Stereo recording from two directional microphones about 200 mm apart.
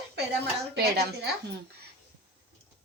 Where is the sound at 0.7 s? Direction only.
55° right (ahead or behind).